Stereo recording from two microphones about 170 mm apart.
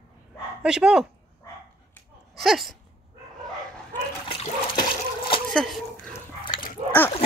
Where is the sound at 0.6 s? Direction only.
5° right (ahead or behind).